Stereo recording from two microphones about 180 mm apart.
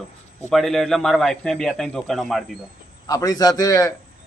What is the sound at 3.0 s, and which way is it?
Speech, 20° left (ahead or behind).